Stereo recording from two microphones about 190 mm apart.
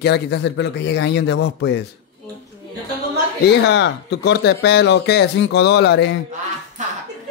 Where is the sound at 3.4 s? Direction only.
60° left (ahead or behind).